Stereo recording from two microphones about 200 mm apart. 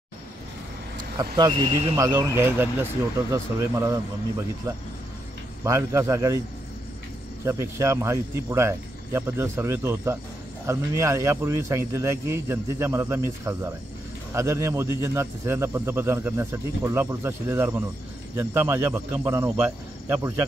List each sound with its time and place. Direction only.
1.1 s speech: 20° right (ahead or behind)
7.4 s speech: 15° right (ahead or behind)